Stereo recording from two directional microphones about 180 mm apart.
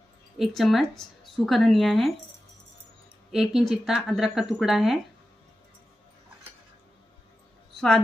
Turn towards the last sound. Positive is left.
turn(degrees=5)  # may be behind; listen again after turning